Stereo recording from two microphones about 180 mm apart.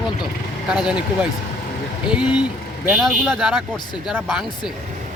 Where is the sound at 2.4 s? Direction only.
5° right (ahead or behind).